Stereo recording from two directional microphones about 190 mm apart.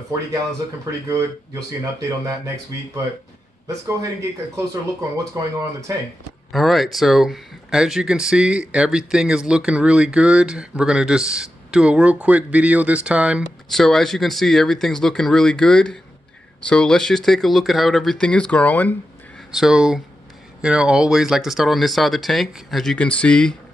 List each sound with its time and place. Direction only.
1.0 s speech: 15° right (ahead or behind)
5.4 s speech: 15° right (ahead or behind)
6.5 s speech: centre (ahead or behind)
19.5 s speech: 5° right (ahead or behind)